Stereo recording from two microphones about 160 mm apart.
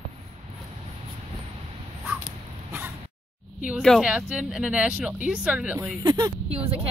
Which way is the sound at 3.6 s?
Centre (ahead or behind).